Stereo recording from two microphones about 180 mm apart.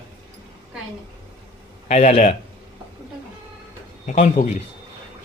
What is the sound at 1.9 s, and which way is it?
Speech, 40° left (ahead or behind).